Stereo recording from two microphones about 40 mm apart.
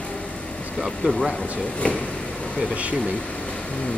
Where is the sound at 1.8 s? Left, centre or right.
Left.